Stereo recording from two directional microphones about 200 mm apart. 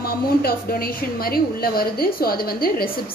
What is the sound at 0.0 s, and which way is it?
A woman's voice, 50° left (ahead or behind).